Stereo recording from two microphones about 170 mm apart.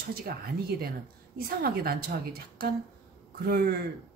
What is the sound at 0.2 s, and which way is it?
Speech, 65° right (ahead or behind).